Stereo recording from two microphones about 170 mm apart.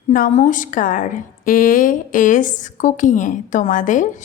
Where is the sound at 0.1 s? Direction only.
45° left (ahead or behind).